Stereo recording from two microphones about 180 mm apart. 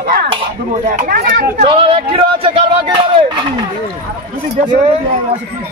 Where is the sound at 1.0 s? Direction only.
55° right (ahead or behind).